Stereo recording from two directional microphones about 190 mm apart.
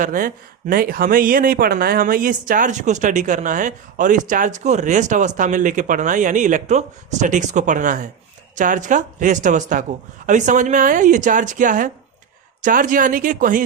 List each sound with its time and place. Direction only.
0.0 s speech: 45° right (ahead or behind)